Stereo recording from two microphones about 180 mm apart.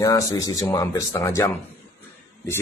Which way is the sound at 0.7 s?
15° left (ahead or behind).